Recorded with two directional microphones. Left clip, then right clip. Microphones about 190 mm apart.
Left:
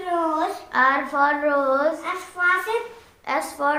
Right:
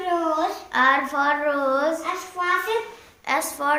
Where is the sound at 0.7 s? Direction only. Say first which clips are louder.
Even; 50° left (ahead or behind).